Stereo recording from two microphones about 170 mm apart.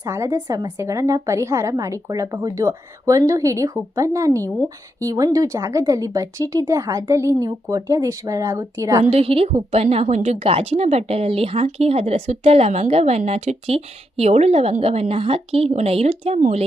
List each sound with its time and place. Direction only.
0.0 s a woman's voice: 20° right (ahead or behind)
9.0 s a woman's voice: 35° right (ahead or behind)